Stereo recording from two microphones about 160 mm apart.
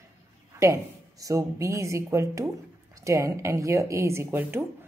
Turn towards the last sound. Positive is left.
turn(degrees=-15)  # may be behind; listen again after turning